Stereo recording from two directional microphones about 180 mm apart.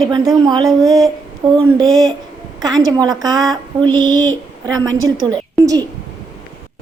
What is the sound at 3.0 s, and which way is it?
A woman's voice, 20° right (ahead or behind).